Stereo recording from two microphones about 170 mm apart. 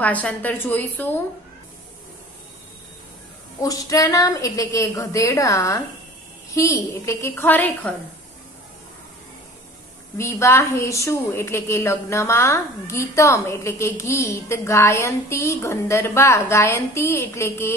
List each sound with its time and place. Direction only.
0.0 s a woman's voice: 10° left (ahead or behind)
3.6 s a woman's voice: 20° left (ahead or behind)
10.1 s a woman's voice: 15° left (ahead or behind)